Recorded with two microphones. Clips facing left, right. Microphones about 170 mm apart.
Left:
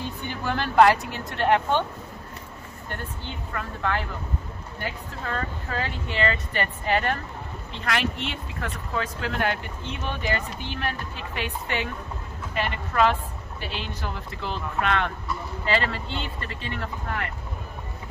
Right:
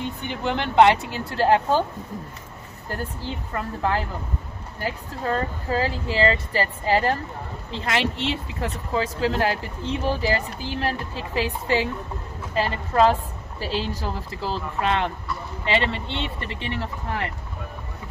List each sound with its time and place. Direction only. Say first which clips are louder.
0.3 s speech: right 2 dB; 20° right (ahead or behind)
3.5 s a woman's voice: right 3 dB; 30° right (ahead or behind)